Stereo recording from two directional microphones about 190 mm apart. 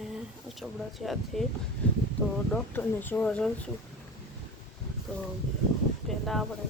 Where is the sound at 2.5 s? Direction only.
5° left (ahead or behind).